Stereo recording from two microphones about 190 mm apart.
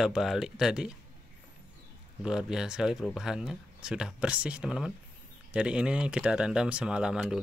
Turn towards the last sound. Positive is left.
turn(degrees=-5)  # may be behind; listen again after turning